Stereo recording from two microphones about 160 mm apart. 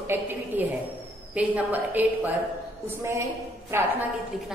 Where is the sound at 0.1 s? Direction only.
10° right (ahead or behind).